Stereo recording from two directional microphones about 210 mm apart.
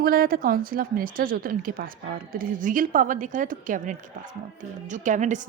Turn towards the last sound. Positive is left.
turn(degrees=-35)  # may be behind; listen again after turning